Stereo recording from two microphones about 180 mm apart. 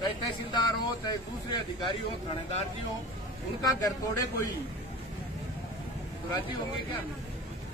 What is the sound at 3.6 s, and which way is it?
Speech, 20° left (ahead or behind).